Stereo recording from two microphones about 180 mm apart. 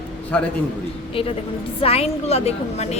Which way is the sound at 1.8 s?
35° left (ahead or behind).